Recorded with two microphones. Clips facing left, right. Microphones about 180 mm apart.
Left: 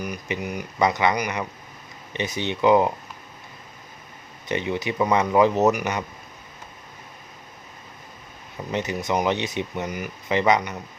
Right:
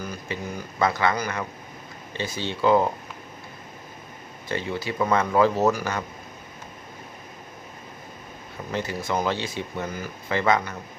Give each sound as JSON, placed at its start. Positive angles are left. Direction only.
{"t": 0.0, "sound": "speech", "side_deg": 15}
{"t": 4.4, "sound": "speech", "side_deg": 20}
{"t": 8.7, "sound": "speech", "side_deg": 20}